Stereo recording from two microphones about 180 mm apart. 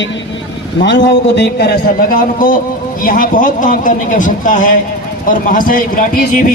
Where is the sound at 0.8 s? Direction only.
80° left; by 6.5 s 50° left (ahead or behind).